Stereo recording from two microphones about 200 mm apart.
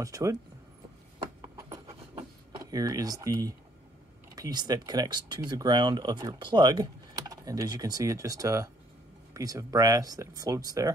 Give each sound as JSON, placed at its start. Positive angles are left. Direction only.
{"t": 0.0, "sound": "speech", "side_deg": -15}
{"t": 1.6, "sound": "a sound", "side_deg": -15}
{"t": 2.7, "sound": "speech", "side_deg": -15}